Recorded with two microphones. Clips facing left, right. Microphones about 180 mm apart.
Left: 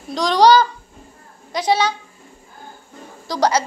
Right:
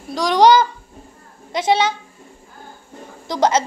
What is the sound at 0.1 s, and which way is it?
A child's voice, 10° right (ahead or behind).